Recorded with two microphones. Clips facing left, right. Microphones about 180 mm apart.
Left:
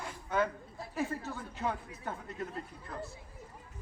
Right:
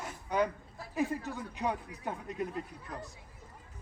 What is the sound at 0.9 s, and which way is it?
Speech, 15° right (ahead or behind).